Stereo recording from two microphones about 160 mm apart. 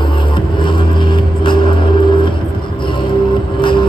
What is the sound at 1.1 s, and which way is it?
Vehicle, 30° left (ahead or behind).